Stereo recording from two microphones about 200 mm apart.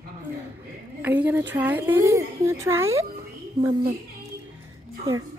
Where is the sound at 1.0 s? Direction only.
10° right (ahead or behind).